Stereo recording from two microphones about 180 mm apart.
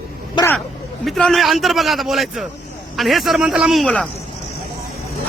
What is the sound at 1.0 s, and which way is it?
A man's voice, centre (ahead or behind).